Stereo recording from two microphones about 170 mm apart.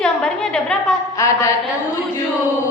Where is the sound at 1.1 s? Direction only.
20° left (ahead or behind).